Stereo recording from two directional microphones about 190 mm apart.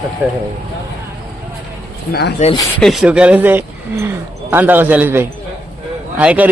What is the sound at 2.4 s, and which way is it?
Speech, 40° left (ahead or behind).